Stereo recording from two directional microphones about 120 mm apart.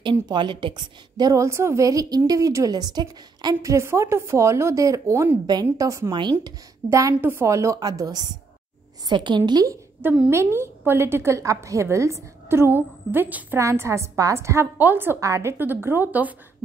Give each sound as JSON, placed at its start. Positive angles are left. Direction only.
{"t": 0.0, "sound": "a woman's voice", "side_deg": -40}
{"t": 3.7, "sound": "a woman's voice", "side_deg": -25}
{"t": 10.3, "sound": "a woman's voice", "side_deg": -20}